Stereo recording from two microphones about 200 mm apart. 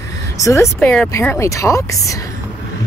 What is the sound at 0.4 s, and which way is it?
Speech, 15° left (ahead or behind).